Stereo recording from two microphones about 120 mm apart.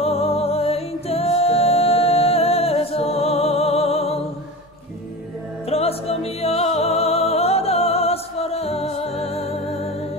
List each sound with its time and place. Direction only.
0.0 s music: 55° left (ahead or behind)
5.7 s music: 55° left (ahead or behind)